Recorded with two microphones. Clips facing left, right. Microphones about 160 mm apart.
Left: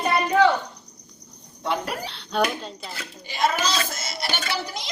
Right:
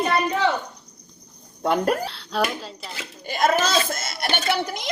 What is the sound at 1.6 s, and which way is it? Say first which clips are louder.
Speech: right 6 dB; 50° right (ahead or behind).